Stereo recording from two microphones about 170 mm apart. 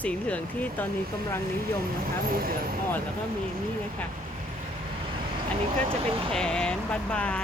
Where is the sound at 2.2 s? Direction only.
60° right (ahead or behind).